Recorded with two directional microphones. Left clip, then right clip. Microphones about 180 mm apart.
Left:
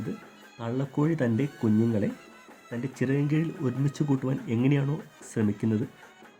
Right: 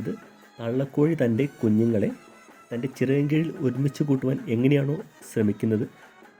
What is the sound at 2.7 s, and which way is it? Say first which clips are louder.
Speech: right 5 dB; 15° right (ahead or behind).